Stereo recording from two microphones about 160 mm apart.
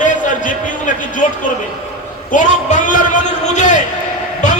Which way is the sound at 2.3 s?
55° left (ahead or behind).